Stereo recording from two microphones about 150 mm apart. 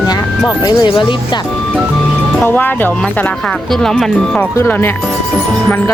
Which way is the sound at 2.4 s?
10° left (ahead or behind).